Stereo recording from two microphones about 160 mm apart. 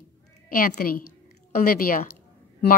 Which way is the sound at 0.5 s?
65° left (ahead or behind).